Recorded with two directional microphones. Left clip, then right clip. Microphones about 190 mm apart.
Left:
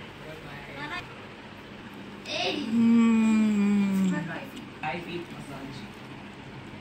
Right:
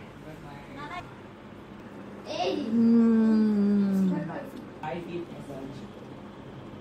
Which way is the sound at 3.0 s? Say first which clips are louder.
Even; 50° left (ahead or behind).